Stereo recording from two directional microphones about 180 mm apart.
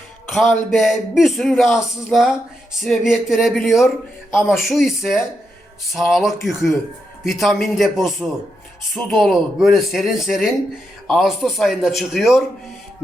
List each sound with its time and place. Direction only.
0.3 s speech: centre (ahead or behind)